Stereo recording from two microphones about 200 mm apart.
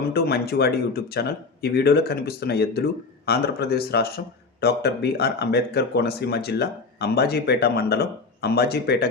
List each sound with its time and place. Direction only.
0.1 s speech: 50° left (ahead or behind)